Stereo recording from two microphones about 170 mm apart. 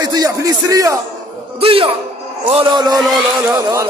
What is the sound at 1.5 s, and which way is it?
A man's voice, 35° right (ahead or behind).